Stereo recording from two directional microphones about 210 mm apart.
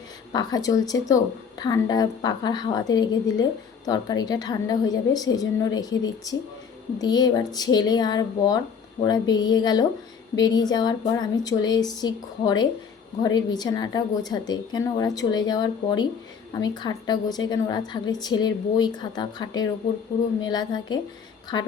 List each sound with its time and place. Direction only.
0.3 s a woman's voice: 20° left (ahead or behind)